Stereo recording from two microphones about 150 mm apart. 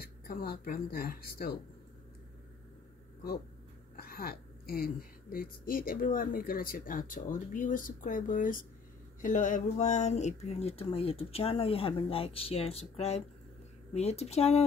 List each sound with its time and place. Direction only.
0.0 s speech: 85° left
3.9 s a woman's voice: 90° left; by 14.6 s 45° left (ahead or behind)